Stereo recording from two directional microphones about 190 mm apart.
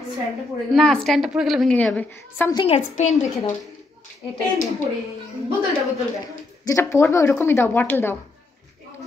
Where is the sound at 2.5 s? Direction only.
25° left (ahead or behind).